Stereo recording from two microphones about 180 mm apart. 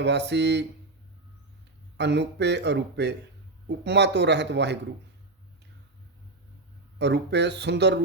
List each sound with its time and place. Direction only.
0.0 s a man's voice: 70° right (ahead or behind)
2.0 s a man's voice: 70° right (ahead or behind)
7.0 s a man's voice: 70° right (ahead or behind)